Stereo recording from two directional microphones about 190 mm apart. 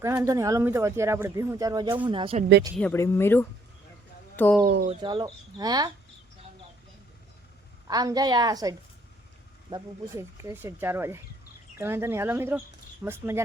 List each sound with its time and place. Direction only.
0.0 s speech: 20° right (ahead or behind)
2.7 s speech: 10° left (ahead or behind)
4.9 s speech: 25° right (ahead or behind)
7.9 s speech: 20° right (ahead or behind)